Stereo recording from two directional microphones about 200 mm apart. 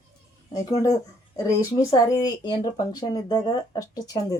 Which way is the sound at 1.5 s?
15° left (ahead or behind).